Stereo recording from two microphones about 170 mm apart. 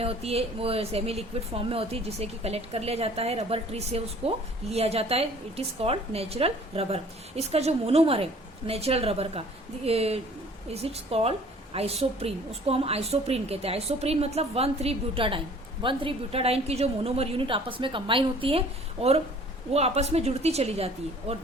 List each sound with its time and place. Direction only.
0.0 s a woman's voice: 35° right (ahead or behind)